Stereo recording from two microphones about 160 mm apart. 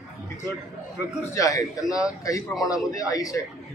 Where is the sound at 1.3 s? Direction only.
20° left (ahead or behind).